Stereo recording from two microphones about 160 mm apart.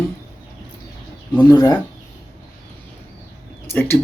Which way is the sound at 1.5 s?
25° left (ahead or behind).